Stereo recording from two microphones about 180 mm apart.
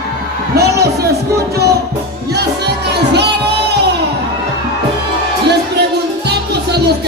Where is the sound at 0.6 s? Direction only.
65° right (ahead or behind).